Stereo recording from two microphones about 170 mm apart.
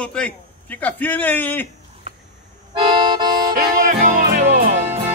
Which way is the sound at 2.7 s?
25° right (ahead or behind).